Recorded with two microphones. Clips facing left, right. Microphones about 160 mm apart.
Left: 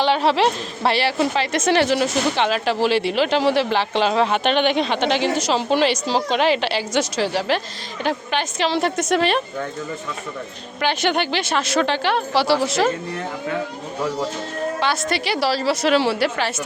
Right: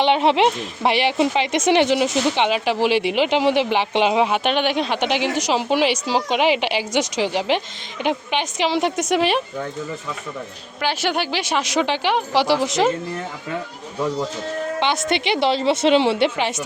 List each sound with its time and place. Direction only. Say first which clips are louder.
0.0 s a woman's voice: right 1 dB; 20° right (ahead or behind)
10.8 s a woman's voice: left 2 dB; 5° right (ahead or behind)
14.8 s a woman's voice: right 2 dB; 20° right (ahead or behind)